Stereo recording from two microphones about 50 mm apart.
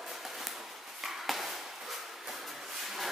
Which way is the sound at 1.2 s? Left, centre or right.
Centre.